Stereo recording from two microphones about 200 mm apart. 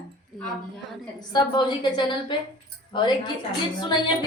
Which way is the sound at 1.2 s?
20° left (ahead or behind).